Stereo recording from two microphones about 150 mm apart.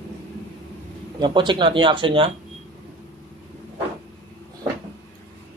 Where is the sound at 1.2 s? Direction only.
30° right (ahead or behind).